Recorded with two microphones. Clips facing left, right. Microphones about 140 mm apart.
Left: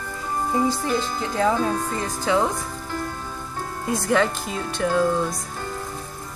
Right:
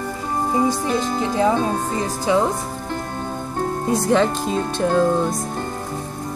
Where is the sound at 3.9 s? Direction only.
30° right (ahead or behind).